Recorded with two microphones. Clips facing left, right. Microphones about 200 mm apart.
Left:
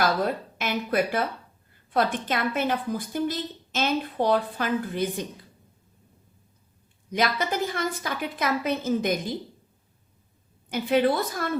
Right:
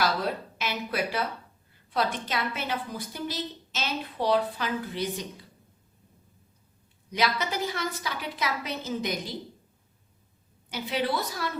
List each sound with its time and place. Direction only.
0.6 s a woman's voice: 50° left (ahead or behind)
7.1 s a woman's voice: 50° left (ahead or behind)
10.7 s a woman's voice: 50° left (ahead or behind)